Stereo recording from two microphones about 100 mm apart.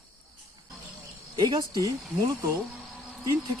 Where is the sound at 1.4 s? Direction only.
40° right (ahead or behind).